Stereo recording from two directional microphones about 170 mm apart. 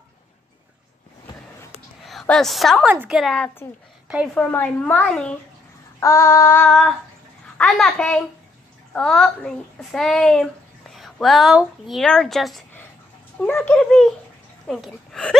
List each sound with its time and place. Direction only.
2.0 s a child's voice: 5° left (ahead or behind)
5.9 s a woman's voice: 15° left (ahead or behind)
6.7 s a child's voice: centre (ahead or behind)